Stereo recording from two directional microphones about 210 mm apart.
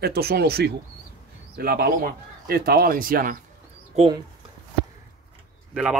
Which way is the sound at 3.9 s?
25° right (ahead or behind).